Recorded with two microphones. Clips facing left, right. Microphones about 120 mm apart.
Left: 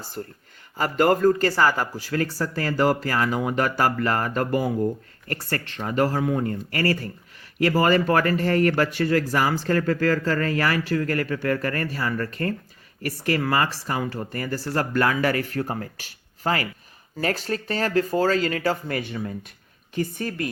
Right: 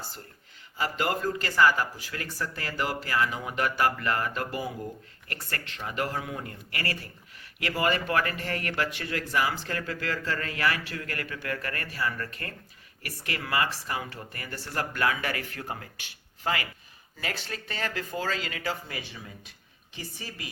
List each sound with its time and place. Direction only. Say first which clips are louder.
0.2 s speech: left 13 dB; 45° left (ahead or behind)